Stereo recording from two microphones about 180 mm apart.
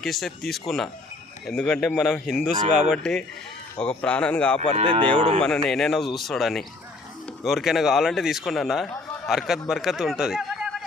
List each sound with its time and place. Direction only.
0.0 s a man's voice: centre (ahead or behind)
4.8 s speech: 30° right (ahead or behind)
5.4 s a man's voice: 5° left (ahead or behind)